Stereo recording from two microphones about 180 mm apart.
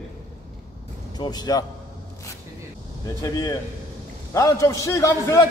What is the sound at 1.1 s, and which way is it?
Speech, 20° left (ahead or behind).